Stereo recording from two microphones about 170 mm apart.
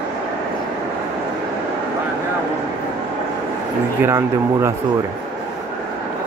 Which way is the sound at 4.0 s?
15° right (ahead or behind).